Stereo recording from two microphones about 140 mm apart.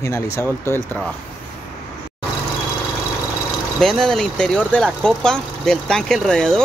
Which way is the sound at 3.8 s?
5° left (ahead or behind).